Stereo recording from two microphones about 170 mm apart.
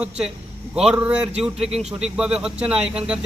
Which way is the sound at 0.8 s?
5° right (ahead or behind).